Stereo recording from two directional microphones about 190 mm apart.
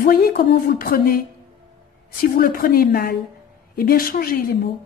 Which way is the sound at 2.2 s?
50° left (ahead or behind).